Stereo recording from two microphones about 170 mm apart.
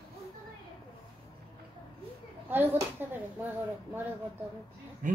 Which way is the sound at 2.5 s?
10° right (ahead or behind).